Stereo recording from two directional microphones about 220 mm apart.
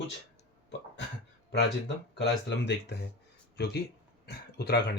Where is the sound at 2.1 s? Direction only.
50° left (ahead or behind).